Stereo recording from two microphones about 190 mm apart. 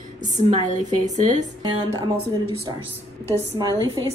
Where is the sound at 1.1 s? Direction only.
40° right (ahead or behind).